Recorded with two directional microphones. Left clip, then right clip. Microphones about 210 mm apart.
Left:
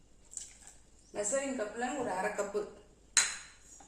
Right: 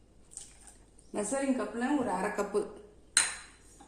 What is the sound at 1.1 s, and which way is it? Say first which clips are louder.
Speech: right 2 dB; 50° right (ahead or behind).